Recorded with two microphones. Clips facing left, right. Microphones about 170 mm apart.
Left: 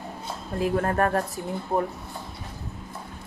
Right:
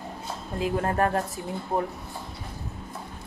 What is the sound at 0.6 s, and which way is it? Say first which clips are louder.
Speech: left 2 dB; 25° right (ahead or behind).